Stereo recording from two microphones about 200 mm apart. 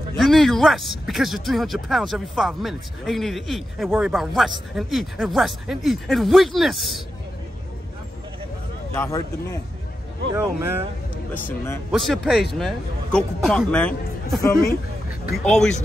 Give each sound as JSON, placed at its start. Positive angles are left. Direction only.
{"t": 0.2, "sound": "speech", "side_deg": 0}
{"t": 8.9, "sound": "speech", "side_deg": 15}
{"t": 10.3, "sound": "speech", "side_deg": -10}
{"t": 11.4, "sound": "speech", "side_deg": 15}
{"t": 11.9, "sound": "speech", "side_deg": 0}